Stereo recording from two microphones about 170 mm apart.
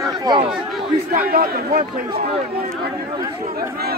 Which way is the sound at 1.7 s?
30° right (ahead or behind).